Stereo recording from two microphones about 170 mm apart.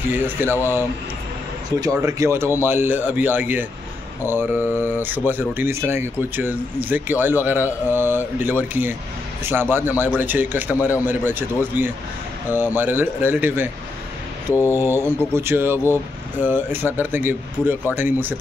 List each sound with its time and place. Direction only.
0.1 s speech: 10° right (ahead or behind)
1.8 s speech: 20° right (ahead or behind)
14.5 s mantra: 15° left (ahead or behind)
15.3 s speech: 15° right (ahead or behind)